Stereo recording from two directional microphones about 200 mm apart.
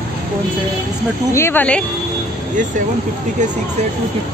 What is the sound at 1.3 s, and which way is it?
Speech, 10° left (ahead or behind).